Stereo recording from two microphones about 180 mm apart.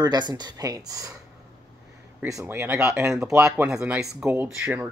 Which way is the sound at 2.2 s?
15° right (ahead or behind).